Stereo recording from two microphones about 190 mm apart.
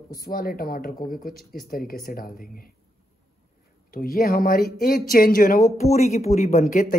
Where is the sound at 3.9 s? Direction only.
50° left (ahead or behind).